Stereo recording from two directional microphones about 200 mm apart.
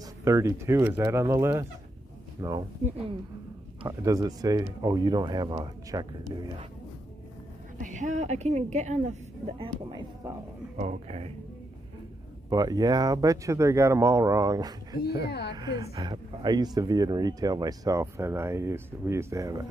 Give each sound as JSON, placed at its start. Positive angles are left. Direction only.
{"t": 0.2, "sound": "speech", "side_deg": -15}
{"t": 3.8, "sound": "speech", "side_deg": -15}
{"t": 7.8, "sound": "a woman's voice", "side_deg": -40}
{"t": 9.6, "sound": "speech", "side_deg": -25}
{"t": 10.8, "sound": "a woman's voice", "side_deg": -35}
{"t": 12.4, "sound": "speech", "side_deg": -20}
{"t": 15.2, "sound": "speech", "side_deg": 55}
{"t": 15.5, "sound": "speech", "side_deg": -20}